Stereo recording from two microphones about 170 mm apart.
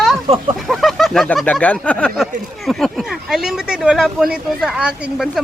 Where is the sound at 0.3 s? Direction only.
35° right (ahead or behind).